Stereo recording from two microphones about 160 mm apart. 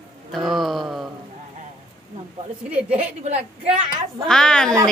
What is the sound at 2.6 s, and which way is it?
Speech, 10° right (ahead or behind).